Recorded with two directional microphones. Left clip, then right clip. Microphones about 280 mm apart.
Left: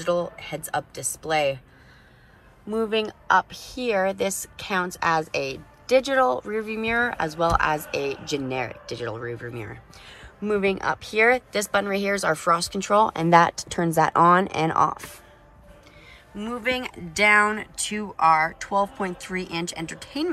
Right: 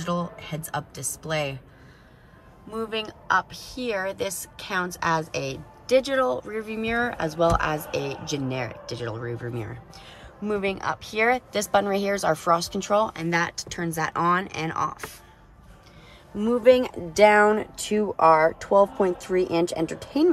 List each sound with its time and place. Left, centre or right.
0.0 s speech: centre
2.7 s speech: centre
16.3 s speech: right